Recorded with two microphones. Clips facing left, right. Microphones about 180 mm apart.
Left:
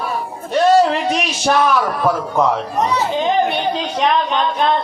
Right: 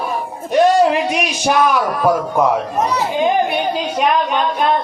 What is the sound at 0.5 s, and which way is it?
A man's voice, 15° right (ahead or behind).